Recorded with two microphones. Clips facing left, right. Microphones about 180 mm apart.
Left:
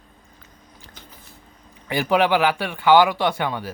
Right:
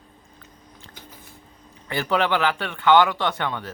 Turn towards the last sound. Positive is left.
turn(degrees=10)  # may be behind; listen again after turning